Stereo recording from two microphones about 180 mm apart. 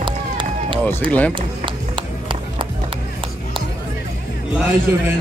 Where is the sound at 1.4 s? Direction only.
25° right (ahead or behind).